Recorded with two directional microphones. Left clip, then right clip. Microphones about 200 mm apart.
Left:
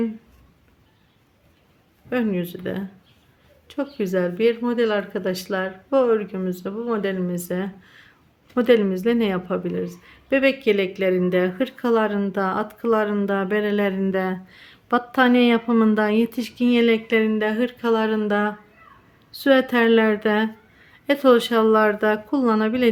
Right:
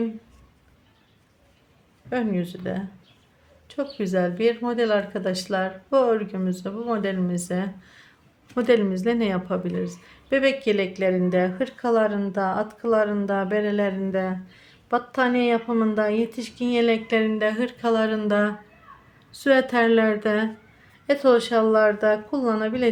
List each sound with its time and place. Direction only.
2.0 s speech: 10° left (ahead or behind)